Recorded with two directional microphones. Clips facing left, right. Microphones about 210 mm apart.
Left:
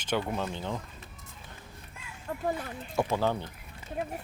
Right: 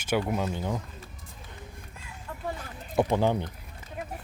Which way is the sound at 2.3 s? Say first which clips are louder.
Left 5 dB; 40° left (ahead or behind).